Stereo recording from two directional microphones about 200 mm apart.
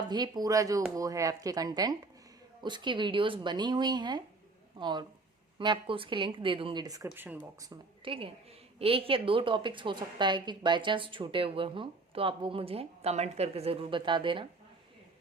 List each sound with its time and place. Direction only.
0.1 s a woman's voice: 20° right (ahead or behind)
8.1 s a woman's voice: 30° right (ahead or behind)